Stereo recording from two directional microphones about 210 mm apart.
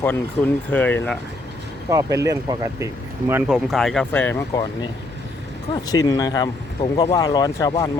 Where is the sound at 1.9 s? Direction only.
15° right (ahead or behind); by 4.7 s 15° left (ahead or behind).